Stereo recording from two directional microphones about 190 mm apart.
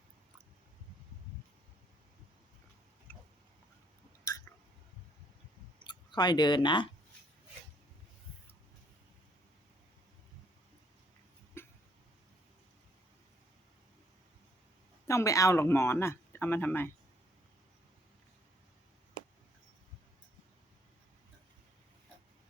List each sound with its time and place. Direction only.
5.8 s speech: 25° left (ahead or behind)
11.6 s a sound: 10° left (ahead or behind)
15.0 s speech: 15° left (ahead or behind)